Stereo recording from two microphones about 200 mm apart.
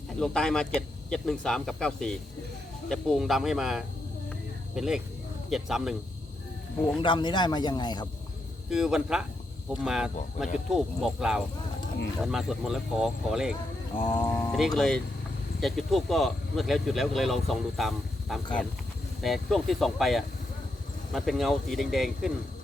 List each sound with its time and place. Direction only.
0.2 s speech: 5° left (ahead or behind)
7.0 s a man's voice: 25° left (ahead or behind)
8.7 s speech: 5° right (ahead or behind)
14.2 s speech: 15° left (ahead or behind)
14.5 s speech: centre (ahead or behind)